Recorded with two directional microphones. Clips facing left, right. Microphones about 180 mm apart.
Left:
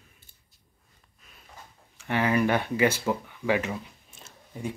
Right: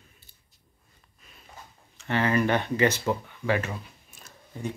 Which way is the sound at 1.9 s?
10° left (ahead or behind).